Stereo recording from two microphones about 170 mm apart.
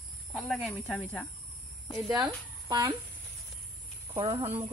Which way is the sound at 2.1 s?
20° right (ahead or behind).